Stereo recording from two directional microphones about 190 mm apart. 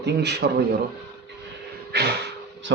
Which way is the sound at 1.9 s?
60° right (ahead or behind).